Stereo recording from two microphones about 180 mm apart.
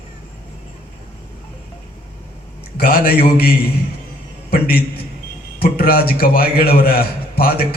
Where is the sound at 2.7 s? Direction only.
55° left (ahead or behind).